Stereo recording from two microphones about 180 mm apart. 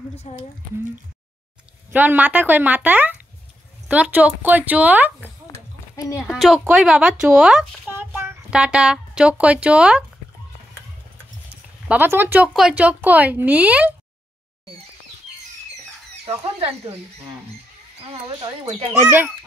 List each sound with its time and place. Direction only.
0.3 s speech: 40° left (ahead or behind)
1.9 s speech: 10° right (ahead or behind)
5.5 s a sound: 20° left (ahead or behind)
6.3 s a child's voice: centre (ahead or behind)
11.9 s speech: 10° right (ahead or behind)
16.4 s speech: 35° right (ahead or behind)
18.0 s speech: 30° right (ahead or behind)
19.0 s speech: 10° right (ahead or behind)